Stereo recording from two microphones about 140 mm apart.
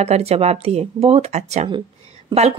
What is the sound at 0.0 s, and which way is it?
Speech, 50° right (ahead or behind).